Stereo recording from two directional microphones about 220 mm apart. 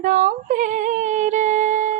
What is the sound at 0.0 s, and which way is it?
Music, 35° right (ahead or behind).